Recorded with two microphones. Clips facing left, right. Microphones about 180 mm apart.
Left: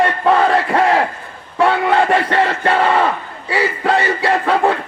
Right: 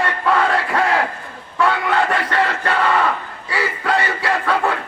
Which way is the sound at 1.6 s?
30° left (ahead or behind).